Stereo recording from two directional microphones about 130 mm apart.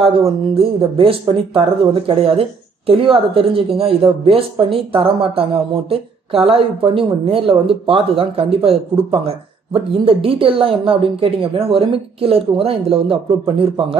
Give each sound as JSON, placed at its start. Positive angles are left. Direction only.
{"t": 0.6, "sound": "a woman's voice", "side_deg": -45}